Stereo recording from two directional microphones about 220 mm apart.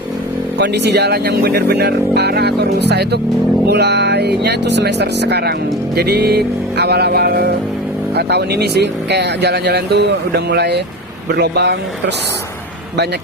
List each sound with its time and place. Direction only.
0.6 s speech: 50° right (ahead or behind)